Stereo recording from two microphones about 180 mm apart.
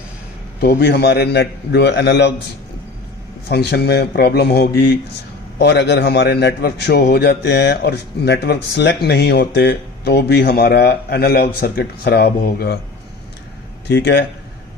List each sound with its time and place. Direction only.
0.6 s a man's voice: 60° left (ahead or behind)
3.5 s a man's voice: 65° left (ahead or behind)
13.8 s a man's voice: 70° left (ahead or behind)